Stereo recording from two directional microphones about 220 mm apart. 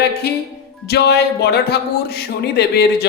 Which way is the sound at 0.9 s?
50° left (ahead or behind).